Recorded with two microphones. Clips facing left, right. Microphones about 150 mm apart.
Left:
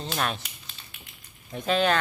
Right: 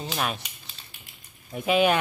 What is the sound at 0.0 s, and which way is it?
Speech, 5° right (ahead or behind).